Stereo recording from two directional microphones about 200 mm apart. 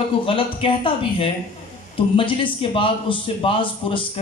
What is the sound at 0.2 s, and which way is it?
A man's voice, 25° left (ahead or behind).